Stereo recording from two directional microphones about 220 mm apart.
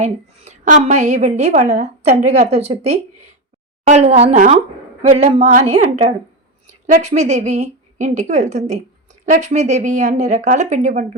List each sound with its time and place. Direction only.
0.0 s a woman's voice: 30° right (ahead or behind)